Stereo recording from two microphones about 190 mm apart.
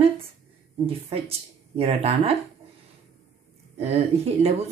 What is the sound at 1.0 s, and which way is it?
Speech, 30° right (ahead or behind).